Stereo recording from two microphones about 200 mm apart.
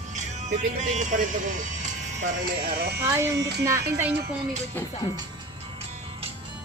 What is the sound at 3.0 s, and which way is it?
Music, 10° right (ahead or behind).